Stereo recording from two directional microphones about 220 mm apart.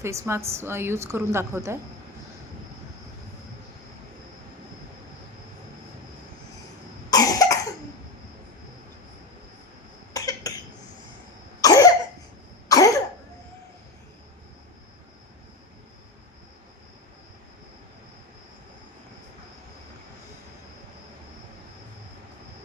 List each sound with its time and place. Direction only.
0.0 s a woman's voice: 15° right (ahead or behind)
7.1 s cough: 15° left (ahead or behind)
10.1 s cough: 15° left (ahead or behind)
11.6 s cough: 15° left (ahead or behind)